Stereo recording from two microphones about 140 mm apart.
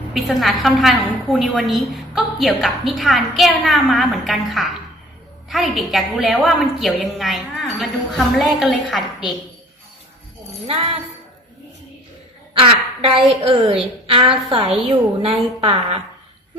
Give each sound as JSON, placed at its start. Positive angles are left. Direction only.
{"t": 0.1, "sound": "a woman's voice", "side_deg": 0}
{"t": 10.7, "sound": "a woman's voice", "side_deg": -40}
{"t": 12.5, "sound": "a woman's voice", "side_deg": -40}